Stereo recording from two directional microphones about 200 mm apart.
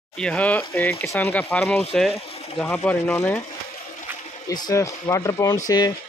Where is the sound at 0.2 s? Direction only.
5° left (ahead or behind).